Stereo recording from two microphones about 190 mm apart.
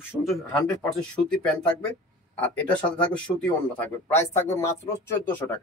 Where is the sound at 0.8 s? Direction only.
5° left (ahead or behind).